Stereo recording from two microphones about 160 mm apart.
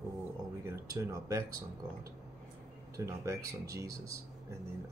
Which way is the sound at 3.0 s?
20° right (ahead or behind).